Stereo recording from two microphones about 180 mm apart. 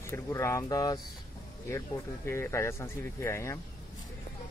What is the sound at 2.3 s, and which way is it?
Speech, 15° left (ahead or behind).